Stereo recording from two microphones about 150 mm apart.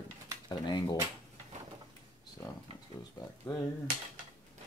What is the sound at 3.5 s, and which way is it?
Speech, 30° left (ahead or behind).